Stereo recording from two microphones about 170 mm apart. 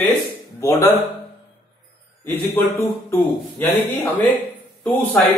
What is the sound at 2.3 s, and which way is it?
Speech, 10° left (ahead or behind).